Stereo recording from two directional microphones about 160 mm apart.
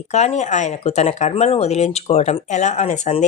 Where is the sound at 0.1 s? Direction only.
45° left (ahead or behind).